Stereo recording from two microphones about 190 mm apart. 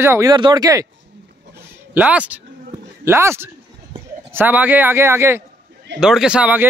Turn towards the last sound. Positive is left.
turn(degrees=-5)  # may be behind; listen again after turning